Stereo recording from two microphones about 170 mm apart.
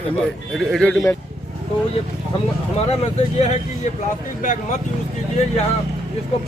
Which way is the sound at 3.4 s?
40° left (ahead or behind).